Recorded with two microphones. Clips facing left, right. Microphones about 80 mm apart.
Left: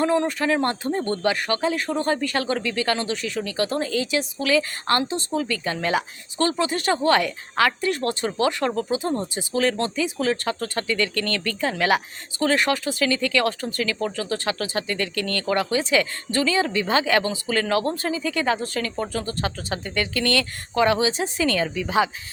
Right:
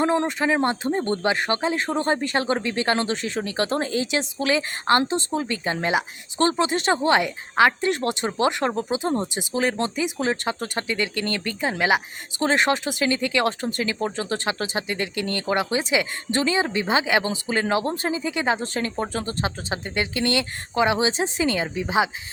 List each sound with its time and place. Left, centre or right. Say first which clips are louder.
0.0 s speech: even; right
12.4 s speech: even; right